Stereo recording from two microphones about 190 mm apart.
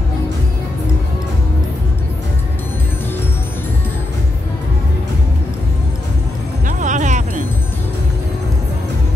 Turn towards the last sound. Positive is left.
turn(degrees=-40)  # may be behind; listen again after turning